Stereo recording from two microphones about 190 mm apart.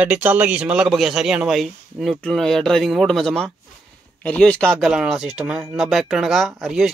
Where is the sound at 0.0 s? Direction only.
5° right (ahead or behind).